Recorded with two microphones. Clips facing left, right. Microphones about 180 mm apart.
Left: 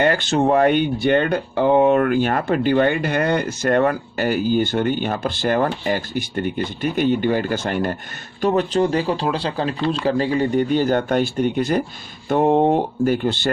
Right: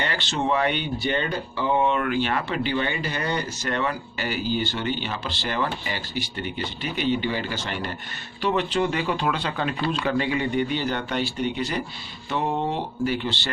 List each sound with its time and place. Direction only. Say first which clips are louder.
0.0 s speech: left 9 dB; 50° left (ahead or behind)